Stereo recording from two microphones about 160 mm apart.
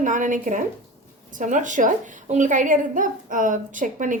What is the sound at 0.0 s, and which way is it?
A woman's voice, 55° right (ahead or behind).